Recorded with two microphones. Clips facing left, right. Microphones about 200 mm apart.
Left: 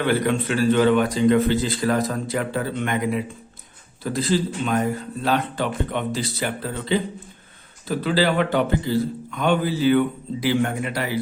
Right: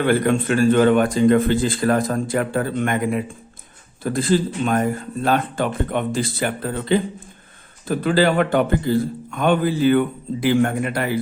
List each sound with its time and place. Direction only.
0.0 s a man's voice: 50° right (ahead or behind)